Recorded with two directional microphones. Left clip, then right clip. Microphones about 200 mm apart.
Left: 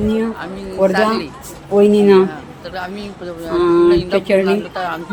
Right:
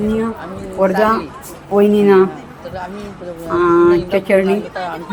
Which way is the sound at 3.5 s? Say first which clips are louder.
Right 1 dB; 5° left (ahead or behind).